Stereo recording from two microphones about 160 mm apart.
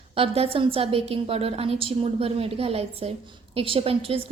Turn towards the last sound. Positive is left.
turn(degrees=-35)  # may be behind; listen again after turning